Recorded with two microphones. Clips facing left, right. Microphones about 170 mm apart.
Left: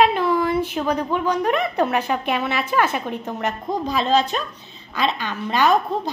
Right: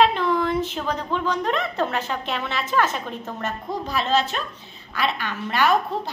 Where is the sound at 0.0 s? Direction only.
10° left (ahead or behind).